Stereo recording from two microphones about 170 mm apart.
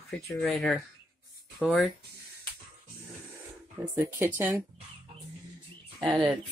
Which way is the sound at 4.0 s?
15° right (ahead or behind).